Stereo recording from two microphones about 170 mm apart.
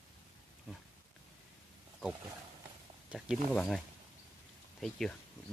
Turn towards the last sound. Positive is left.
turn(degrees=0)  # may be behind; listen again after turning